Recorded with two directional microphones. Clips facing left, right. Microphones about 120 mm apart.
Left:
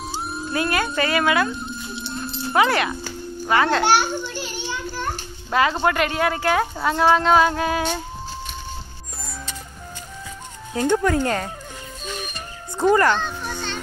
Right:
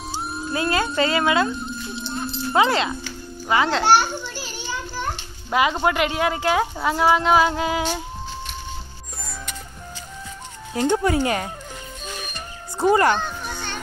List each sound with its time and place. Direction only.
0.5 s speech: 25° right (ahead or behind)
2.5 s speech: 25° right (ahead or behind)
5.5 s speech: 15° right (ahead or behind)
10.7 s speech: 20° right (ahead or behind)
12.7 s speech: 15° right (ahead or behind)